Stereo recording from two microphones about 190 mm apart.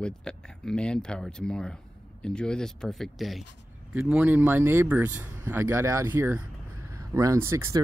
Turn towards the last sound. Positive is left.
turn(degrees=-15)  # may be behind; listen again after turning